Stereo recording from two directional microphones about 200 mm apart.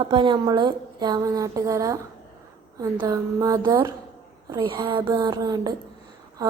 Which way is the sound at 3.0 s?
15° right (ahead or behind).